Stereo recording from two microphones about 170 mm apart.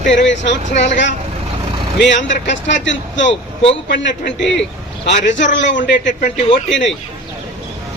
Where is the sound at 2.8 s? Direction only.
90° left.